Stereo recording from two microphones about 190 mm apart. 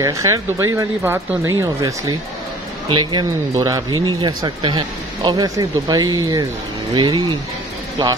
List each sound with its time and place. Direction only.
0.0 s speech: 15° right (ahead or behind)